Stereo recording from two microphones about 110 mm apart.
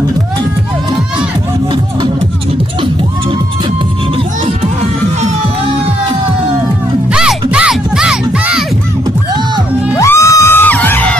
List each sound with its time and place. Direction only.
7.1 s music: 10° right (ahead or behind)
9.9 s music: 25° left (ahead or behind)